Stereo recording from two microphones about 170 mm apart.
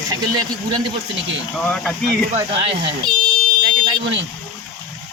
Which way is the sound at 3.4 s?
25° right (ahead or behind).